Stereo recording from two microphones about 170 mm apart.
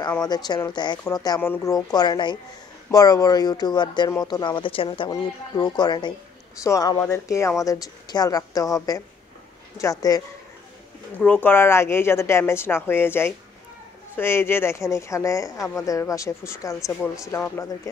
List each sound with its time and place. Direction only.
0.2 s speech: 25° left (ahead or behind)
11.1 s speech: 10° left (ahead or behind)